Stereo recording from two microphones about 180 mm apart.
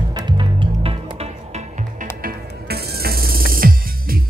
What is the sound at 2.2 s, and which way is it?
Music, 60° right (ahead or behind).